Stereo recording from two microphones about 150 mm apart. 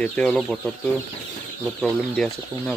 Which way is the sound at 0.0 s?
10° left (ahead or behind).